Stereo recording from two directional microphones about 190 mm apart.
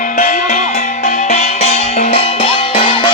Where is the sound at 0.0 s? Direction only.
45° left (ahead or behind).